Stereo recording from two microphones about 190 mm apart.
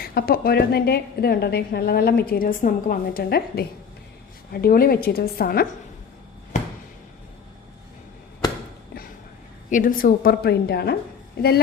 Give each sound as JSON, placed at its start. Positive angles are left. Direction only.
{"t": 0.0, "sound": "a woman's voice", "side_deg": 55}
{"t": 9.6, "sound": "a woman's voice", "side_deg": 45}